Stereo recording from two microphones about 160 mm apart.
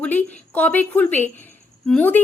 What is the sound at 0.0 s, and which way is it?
Speech, 10° left (ahead or behind).